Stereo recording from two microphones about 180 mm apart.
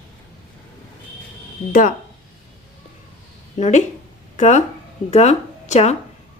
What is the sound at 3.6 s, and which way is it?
Speech, 40° left (ahead or behind).